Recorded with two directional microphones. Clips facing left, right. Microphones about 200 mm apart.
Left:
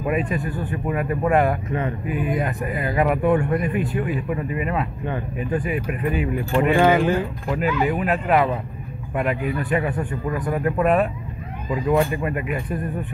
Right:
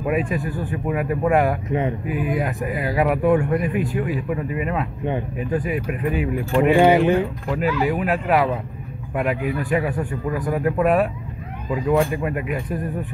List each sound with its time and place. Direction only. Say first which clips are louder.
0.0 s speech: right 1 dB; centre (ahead or behind)
1.7 s speech: right 3 dB; 20° right (ahead or behind)
2.0 s speech: right 1 dB; 5° right (ahead or behind)
6.8 s speech: right 2 dB; 20° right (ahead or behind)
7.4 s speech: right 1 dB; centre (ahead or behind)